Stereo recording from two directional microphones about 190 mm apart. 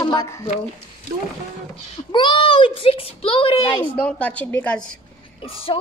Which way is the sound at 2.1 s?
25° left (ahead or behind).